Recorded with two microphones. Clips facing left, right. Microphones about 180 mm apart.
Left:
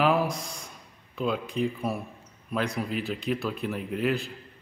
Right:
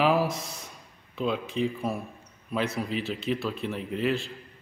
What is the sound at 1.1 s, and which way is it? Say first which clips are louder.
A man's voice: even; centre (ahead or behind).